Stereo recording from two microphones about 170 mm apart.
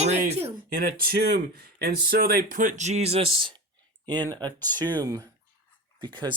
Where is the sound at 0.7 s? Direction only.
60° right (ahead or behind).